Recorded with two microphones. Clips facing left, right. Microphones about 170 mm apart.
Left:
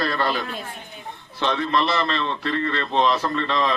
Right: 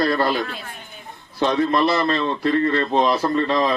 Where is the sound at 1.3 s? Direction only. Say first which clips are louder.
Right 4 dB; 40° right (ahead or behind).